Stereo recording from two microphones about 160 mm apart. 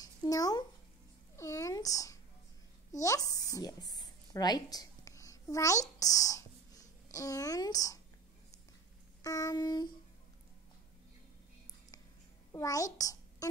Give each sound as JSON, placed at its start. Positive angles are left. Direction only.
{"t": 0.0, "sound": "a sound", "side_deg": 25}
{"t": 5.9, "sound": "whispering", "side_deg": 20}
{"t": 9.2, "sound": "child singing", "side_deg": 20}
{"t": 12.5, "sound": "a child's voice", "side_deg": 20}